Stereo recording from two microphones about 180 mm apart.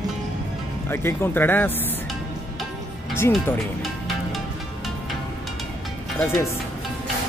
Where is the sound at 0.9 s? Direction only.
15° left (ahead or behind).